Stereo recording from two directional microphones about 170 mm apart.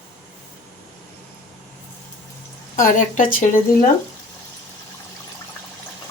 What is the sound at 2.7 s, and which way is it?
Speech, 50° left (ahead or behind).